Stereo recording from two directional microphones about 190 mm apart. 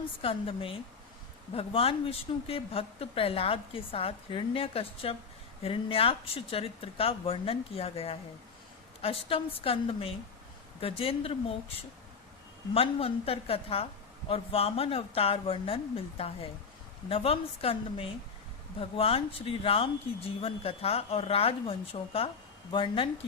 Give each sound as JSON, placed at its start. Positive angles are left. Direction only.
{"t": 0.2, "sound": "a woman's voice", "side_deg": 30}